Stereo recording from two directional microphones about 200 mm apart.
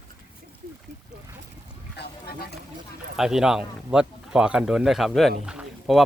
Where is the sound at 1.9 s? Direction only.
50° left (ahead or behind).